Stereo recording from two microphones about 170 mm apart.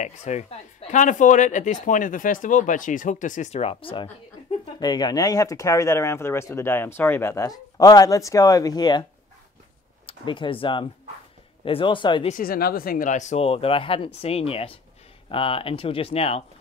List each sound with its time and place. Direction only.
0.0 s speech: 40° left (ahead or behind); by 9.0 s 25° left (ahead or behind)
10.0 s speech: 30° left (ahead or behind)
12.3 s speech: 55° left (ahead or behind); by 16.4 s 35° left (ahead or behind)